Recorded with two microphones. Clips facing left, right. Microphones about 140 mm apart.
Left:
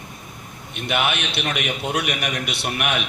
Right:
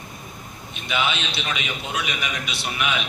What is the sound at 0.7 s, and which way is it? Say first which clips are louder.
A man's voice: left 2 dB; 60° left (ahead or behind).